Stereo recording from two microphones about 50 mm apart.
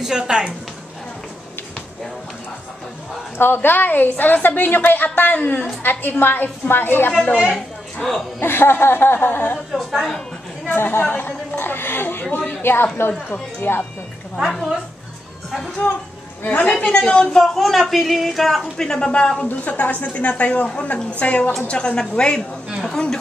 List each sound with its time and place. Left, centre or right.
0.0 s a woman's voice: centre
3.3 s a woman's voice: left
7.5 s a sound: centre
8.4 s speech: left
9.7 s a woman's voice: centre
9.9 s a woman's voice: centre
10.7 s a woman's voice: left
14.3 s a man's voice: centre
16.4 s a woman's voice: left
16.8 s a woman's voice: centre
17.6 s a man's voice: centre